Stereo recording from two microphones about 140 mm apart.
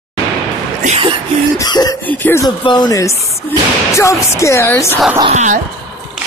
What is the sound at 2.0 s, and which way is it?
Speech, 15° left (ahead or behind).